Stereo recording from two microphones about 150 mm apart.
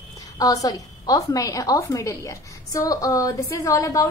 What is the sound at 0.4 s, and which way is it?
A woman's voice, 25° left (ahead or behind).